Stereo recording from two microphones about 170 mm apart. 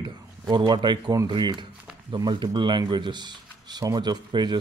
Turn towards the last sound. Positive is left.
turn(degrees=-25)  # may be behind; listen again after turning